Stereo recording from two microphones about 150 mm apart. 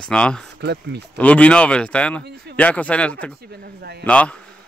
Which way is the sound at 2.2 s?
90° right.